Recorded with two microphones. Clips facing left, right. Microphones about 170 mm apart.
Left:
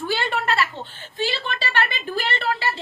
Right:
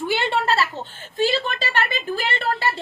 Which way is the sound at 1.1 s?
45° right (ahead or behind).